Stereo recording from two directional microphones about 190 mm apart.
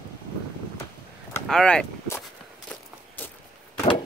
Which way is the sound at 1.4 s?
5° left (ahead or behind).